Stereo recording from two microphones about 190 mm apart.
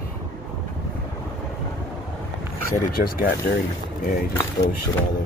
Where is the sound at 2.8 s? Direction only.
50° left (ahead or behind).